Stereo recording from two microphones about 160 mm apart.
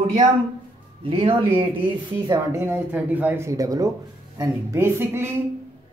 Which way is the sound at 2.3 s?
15° right (ahead or behind).